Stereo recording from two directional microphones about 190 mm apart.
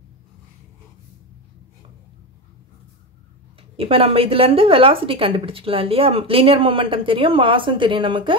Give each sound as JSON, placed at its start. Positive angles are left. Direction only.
{"t": 3.7, "sound": "speech", "side_deg": -30}